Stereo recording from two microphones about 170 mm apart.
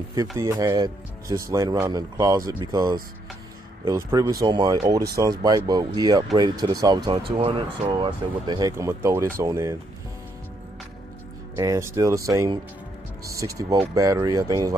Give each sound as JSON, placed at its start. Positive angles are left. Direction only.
{"t": 0.4, "sound": "speech", "side_deg": -20}
{"t": 11.5, "sound": "speech", "side_deg": -20}